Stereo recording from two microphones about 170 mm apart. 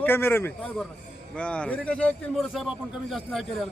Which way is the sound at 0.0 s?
15° left (ahead or behind).